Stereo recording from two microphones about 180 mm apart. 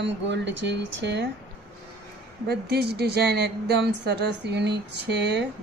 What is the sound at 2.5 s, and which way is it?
A woman's voice, 65° right (ahead or behind).